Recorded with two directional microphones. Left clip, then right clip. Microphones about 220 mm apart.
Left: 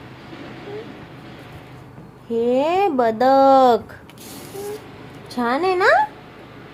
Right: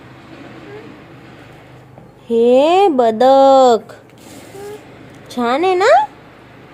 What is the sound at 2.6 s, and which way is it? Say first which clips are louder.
Speech: right 6 dB; 35° right (ahead or behind).